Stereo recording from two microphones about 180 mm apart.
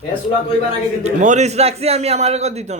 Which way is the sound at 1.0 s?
40° right (ahead or behind).